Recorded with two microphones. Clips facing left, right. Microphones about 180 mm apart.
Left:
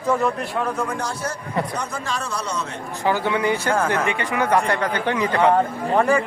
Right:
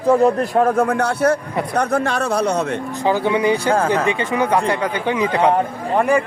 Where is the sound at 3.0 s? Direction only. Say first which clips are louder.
Right 3 dB; 20° right (ahead or behind).